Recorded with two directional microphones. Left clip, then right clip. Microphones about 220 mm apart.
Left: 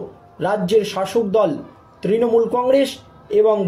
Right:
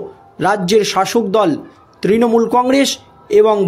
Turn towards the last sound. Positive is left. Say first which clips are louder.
# right 4 dB
turn(degrees=-50)  # may be behind; listen again after turning